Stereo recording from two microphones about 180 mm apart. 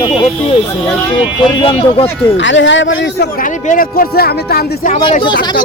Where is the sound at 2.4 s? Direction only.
90° left; by 3.4 s 70° left (ahead or behind).